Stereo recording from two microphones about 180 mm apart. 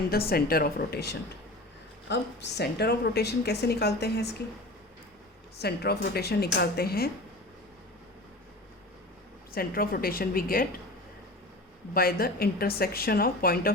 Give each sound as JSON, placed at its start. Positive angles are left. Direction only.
{"t": 0.1, "sound": "a woman's voice", "side_deg": 60}
{"t": 2.0, "sound": "a woman's voice", "side_deg": 70}
{"t": 5.5, "sound": "a woman's voice", "side_deg": 65}
{"t": 9.6, "sound": "a woman's voice", "side_deg": 55}
{"t": 11.9, "sound": "a woman's voice", "side_deg": 55}